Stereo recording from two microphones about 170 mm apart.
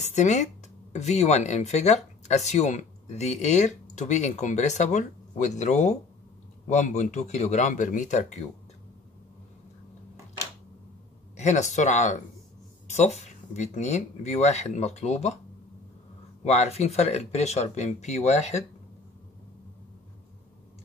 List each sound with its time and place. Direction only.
0.0 s speech: 45° left (ahead or behind)
11.3 s speech: 45° left (ahead or behind)
16.4 s speech: 40° left (ahead or behind)